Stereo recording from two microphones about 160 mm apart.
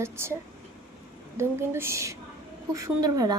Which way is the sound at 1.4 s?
15° right (ahead or behind).